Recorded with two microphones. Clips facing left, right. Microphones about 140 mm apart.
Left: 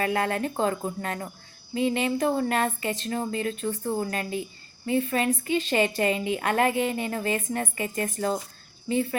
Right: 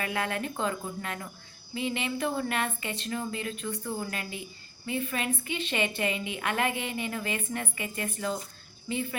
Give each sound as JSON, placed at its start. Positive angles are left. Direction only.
{"t": 0.0, "sound": "speech", "side_deg": 35}